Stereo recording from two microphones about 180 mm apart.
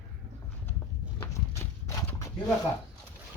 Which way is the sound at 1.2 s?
15° left (ahead or behind).